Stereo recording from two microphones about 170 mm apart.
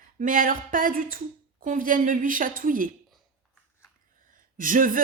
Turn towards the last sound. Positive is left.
turn(degrees=-55)  # may be behind; listen again after turning